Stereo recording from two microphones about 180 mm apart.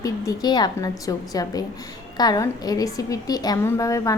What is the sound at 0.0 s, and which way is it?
A woman's voice, 20° left (ahead or behind).